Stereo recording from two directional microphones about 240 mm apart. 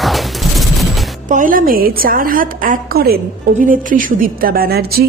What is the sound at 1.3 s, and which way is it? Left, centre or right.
A woman's voice, right.